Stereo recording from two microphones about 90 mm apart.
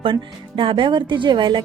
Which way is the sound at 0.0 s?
70° right (ahead or behind).